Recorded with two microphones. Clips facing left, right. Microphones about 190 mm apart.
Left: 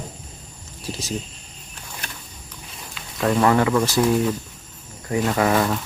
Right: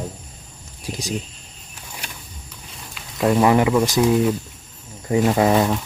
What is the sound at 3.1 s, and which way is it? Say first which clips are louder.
Speech: right 2 dB; 15° right (ahead or behind).